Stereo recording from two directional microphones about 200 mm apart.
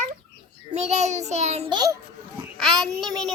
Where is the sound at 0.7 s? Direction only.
35° right (ahead or behind).